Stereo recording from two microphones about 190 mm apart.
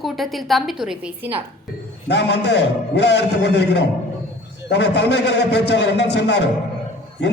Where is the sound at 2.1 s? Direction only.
65° left (ahead or behind).